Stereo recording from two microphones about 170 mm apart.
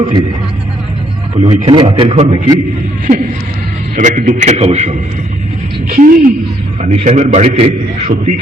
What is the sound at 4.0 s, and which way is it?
Speech, 50° right (ahead or behind).